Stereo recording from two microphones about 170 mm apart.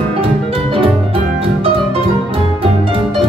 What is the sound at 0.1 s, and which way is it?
Music, 35° right (ahead or behind).